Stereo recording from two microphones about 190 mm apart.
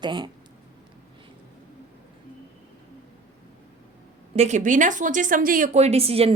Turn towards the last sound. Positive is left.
turn(degrees=-30)  # may be behind; listen again after turning